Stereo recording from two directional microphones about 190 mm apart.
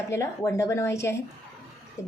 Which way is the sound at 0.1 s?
15° left (ahead or behind).